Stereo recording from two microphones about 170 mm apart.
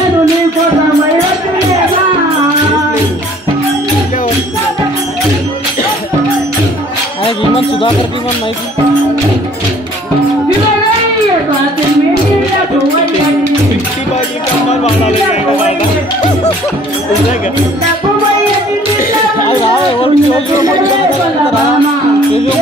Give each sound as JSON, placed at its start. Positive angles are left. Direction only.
{"t": 7.2, "sound": "music", "side_deg": 30}
{"t": 14.7, "sound": "music", "side_deg": 40}
{"t": 19.4, "sound": "music", "side_deg": 30}